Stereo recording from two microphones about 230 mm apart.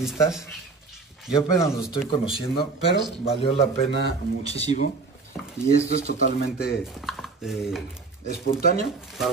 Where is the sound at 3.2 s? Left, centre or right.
Left.